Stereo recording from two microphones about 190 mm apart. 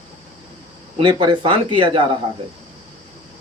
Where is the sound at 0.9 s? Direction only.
25° right (ahead or behind).